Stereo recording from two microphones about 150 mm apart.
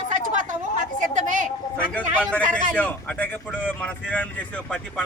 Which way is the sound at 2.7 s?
10° left (ahead or behind).